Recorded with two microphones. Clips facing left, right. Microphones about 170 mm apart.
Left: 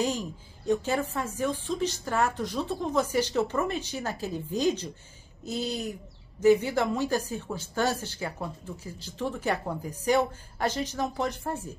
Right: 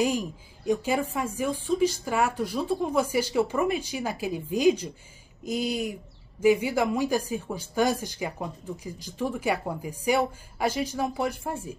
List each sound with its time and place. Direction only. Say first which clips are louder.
0.0 s speech: right 3 dB; 10° right (ahead or behind)